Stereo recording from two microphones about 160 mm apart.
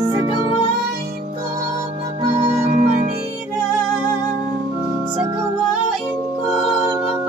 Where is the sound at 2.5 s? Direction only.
40° right (ahead or behind).